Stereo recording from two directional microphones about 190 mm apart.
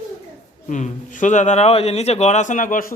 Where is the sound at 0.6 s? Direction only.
40° left (ahead or behind).